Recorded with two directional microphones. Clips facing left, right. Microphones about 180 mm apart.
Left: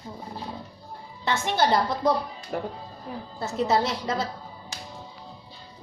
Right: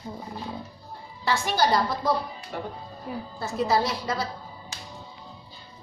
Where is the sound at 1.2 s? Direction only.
20° left (ahead or behind).